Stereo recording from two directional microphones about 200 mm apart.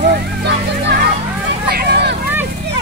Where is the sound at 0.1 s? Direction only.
55° right (ahead or behind).